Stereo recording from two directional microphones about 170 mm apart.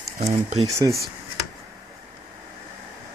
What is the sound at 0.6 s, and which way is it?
Speech, 20° right (ahead or behind).